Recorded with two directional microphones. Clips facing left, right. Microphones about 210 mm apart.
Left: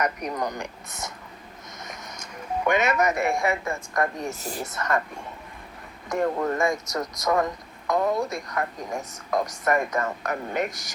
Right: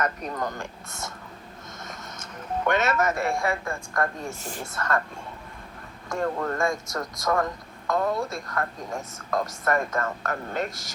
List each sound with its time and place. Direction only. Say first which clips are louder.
0.0 s speech: left 2 dB; 15° left (ahead or behind)
4.4 s speech: left 3 dB; 40° left (ahead or behind)
4.6 s speech: left 1 dB; 20° left (ahead or behind)
6.1 s speech: left 3 dB; 15° left (ahead or behind)